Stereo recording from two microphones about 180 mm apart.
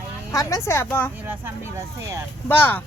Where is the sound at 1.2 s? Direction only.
10° right (ahead or behind).